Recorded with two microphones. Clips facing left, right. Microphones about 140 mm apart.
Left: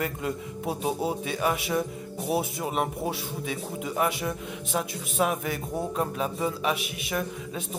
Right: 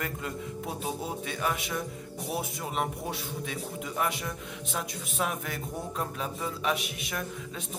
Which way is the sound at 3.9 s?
20° left (ahead or behind).